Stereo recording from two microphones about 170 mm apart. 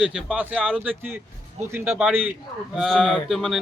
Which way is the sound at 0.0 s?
5° right (ahead or behind).